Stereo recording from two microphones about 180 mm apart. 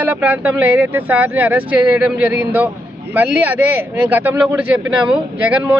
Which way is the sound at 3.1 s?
10° right (ahead or behind).